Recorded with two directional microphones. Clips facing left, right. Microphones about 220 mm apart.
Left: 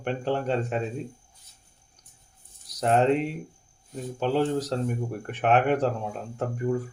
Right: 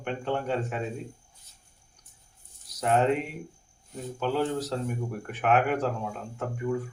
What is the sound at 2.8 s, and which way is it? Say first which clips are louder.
Speech: left 3 dB; 35° left (ahead or behind).